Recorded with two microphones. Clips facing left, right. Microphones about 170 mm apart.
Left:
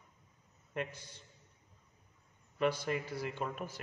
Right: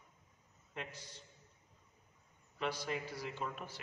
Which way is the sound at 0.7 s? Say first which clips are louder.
Left 7 dB; 55° left (ahead or behind).